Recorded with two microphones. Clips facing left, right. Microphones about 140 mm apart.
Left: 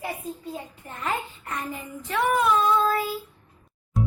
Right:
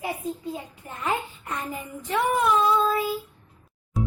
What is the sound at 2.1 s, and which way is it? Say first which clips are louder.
Speech: even; 15° right (ahead or behind).